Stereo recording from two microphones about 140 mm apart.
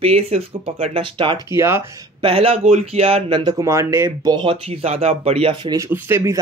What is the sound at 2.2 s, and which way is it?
Speech, 45° right (ahead or behind).